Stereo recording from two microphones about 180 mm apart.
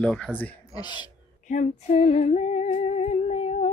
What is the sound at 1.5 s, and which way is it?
Female singing, 40° left (ahead or behind).